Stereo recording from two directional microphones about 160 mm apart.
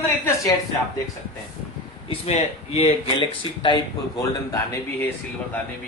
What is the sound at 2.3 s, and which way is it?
A man's voice, 40° left (ahead or behind).